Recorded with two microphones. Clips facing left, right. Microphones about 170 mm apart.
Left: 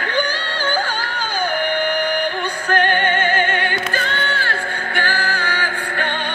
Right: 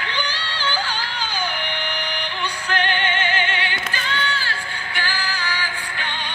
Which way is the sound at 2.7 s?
50° left (ahead or behind).